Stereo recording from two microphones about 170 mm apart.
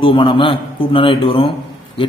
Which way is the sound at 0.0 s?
30° left (ahead or behind).